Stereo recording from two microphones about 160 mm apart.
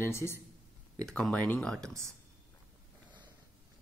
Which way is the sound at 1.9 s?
20° right (ahead or behind).